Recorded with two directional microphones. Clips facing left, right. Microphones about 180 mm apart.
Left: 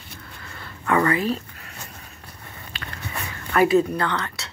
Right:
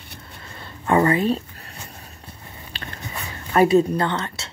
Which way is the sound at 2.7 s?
35° right (ahead or behind).